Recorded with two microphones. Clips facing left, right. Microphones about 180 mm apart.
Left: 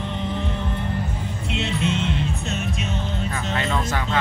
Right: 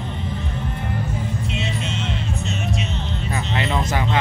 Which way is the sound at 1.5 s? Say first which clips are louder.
Left 3 dB; 60° left (ahead or behind).